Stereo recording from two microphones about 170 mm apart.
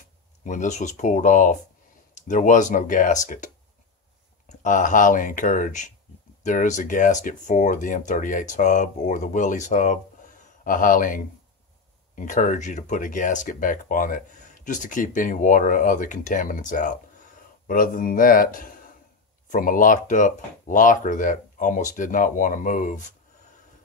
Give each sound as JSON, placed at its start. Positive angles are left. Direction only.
{"t": 0.4, "sound": "speech", "side_deg": 45}
{"t": 4.5, "sound": "speech", "side_deg": 50}